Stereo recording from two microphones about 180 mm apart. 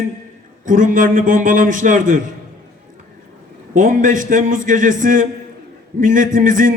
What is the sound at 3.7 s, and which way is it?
A man's voice, 50° right (ahead or behind).